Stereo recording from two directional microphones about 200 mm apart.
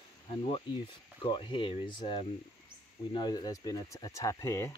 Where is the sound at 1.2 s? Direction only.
25° left (ahead or behind).